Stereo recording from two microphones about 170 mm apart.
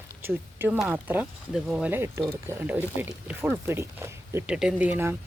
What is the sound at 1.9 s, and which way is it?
Speech, 15° right (ahead or behind).